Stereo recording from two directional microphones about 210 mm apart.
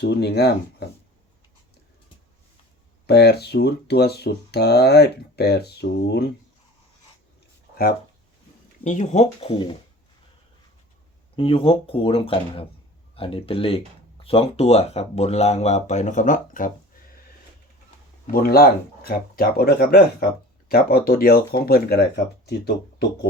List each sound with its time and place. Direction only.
0.0 s speech: 50° left (ahead or behind)
3.1 s speech: 50° left (ahead or behind)
8.8 s speech: 35° left (ahead or behind)
11.3 s speech: 25° left (ahead or behind)
18.3 s speech: 45° left (ahead or behind)